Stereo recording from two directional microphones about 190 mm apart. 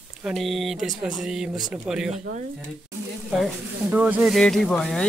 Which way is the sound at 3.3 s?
5° right (ahead or behind).